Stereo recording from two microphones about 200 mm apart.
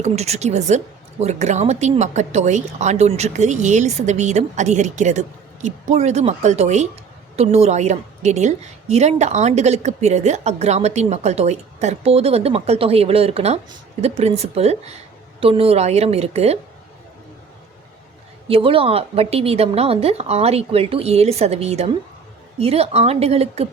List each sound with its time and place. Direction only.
0.0 s a woman's voice: 35° right (ahead or behind)
18.4 s a woman's voice: 25° right (ahead or behind)